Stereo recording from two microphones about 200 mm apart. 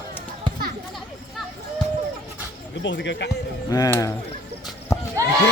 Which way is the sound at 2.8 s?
60° left (ahead or behind).